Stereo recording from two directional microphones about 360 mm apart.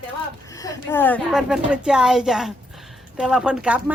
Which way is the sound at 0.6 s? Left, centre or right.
Centre.